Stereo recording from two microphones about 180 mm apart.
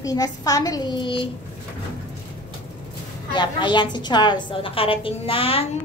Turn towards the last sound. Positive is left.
turn(degrees=30)  # may be behind; listen again after turning